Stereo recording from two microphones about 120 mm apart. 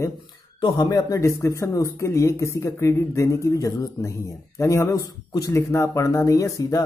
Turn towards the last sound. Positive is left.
turn(degrees=25)  # may be behind; listen again after turning